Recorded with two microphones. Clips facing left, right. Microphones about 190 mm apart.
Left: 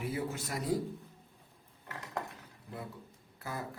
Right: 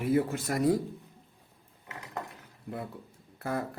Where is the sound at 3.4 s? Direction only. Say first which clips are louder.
Right 8 dB; 60° right (ahead or behind).